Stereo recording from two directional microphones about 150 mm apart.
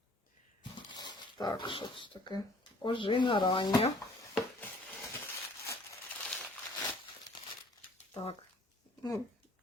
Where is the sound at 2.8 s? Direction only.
30° left (ahead or behind).